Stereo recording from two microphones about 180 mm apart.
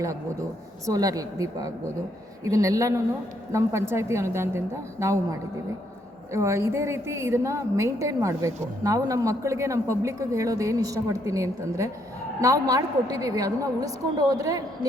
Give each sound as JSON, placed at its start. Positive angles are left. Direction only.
{"t": 0.9, "sound": "a woman's voice", "side_deg": -20}